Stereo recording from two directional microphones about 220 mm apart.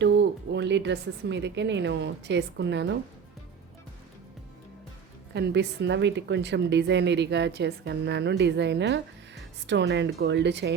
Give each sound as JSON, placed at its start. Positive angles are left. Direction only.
{"t": 0.0, "sound": "a woman's voice", "side_deg": -55}
{"t": 5.3, "sound": "a woman's voice", "side_deg": -50}